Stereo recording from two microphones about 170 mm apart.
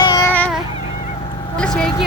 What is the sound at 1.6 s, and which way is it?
Vehicle, 5° left (ahead or behind).